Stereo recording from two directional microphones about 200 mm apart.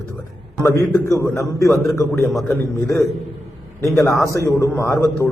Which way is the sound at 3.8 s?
15° left (ahead or behind).